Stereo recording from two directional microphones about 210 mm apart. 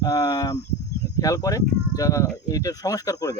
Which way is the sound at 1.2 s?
15° left (ahead or behind).